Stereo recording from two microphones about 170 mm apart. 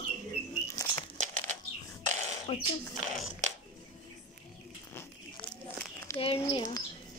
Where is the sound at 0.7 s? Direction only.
20° left (ahead or behind).